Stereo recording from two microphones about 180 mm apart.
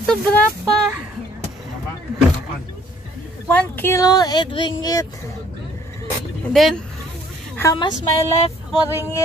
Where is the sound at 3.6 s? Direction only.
10° left (ahead or behind).